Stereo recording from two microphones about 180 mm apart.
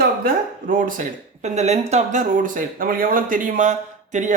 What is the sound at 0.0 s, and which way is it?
Speech, 50° right (ahead or behind).